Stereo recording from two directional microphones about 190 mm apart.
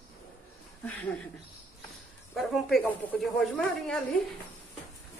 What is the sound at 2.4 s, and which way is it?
Speech, centre (ahead or behind).